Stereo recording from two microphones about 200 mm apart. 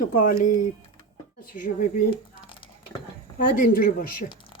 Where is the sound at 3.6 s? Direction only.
50° left (ahead or behind).